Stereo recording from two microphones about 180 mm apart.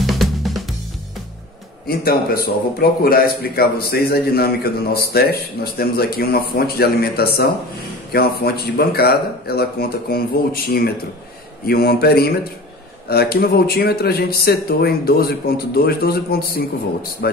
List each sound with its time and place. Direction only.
0.0 s drum kit: centre (ahead or behind)
1.9 s speech: 60° left (ahead or behind)